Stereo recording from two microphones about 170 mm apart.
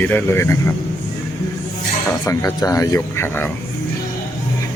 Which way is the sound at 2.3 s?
15° left (ahead or behind).